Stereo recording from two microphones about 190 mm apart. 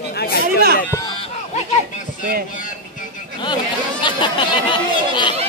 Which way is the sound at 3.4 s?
25° left (ahead or behind).